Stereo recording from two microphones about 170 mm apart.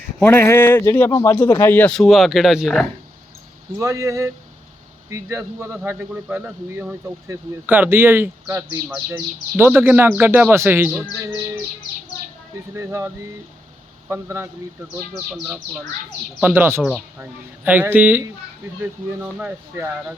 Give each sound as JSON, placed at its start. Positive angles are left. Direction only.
{"t": 0.2, "sound": "a man's voice", "side_deg": 15}
{"t": 3.8, "sound": "a man's voice", "side_deg": -20}
{"t": 12.7, "sound": "a man's voice", "side_deg": -15}
{"t": 14.1, "sound": "a man's voice", "side_deg": -15}